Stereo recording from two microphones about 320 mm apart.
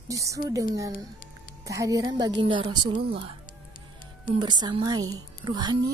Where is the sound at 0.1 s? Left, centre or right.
Centre.